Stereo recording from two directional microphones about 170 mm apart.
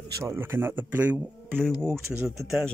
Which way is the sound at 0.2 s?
15° right (ahead or behind).